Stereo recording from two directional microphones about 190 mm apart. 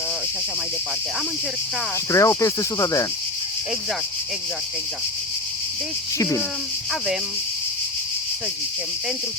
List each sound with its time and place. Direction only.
2.0 s speech: 15° left (ahead or behind)
6.1 s speech: 15° left (ahead or behind)